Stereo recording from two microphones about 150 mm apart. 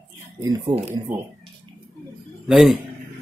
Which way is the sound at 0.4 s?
25° right (ahead or behind).